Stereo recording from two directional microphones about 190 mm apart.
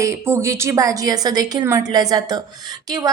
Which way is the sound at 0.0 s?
15° right (ahead or behind).